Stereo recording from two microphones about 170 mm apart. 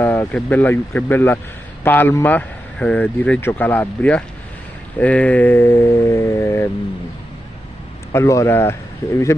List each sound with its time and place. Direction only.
0.0 s a man's voice: 10° left (ahead or behind)
8.1 s a man's voice: 15° left (ahead or behind)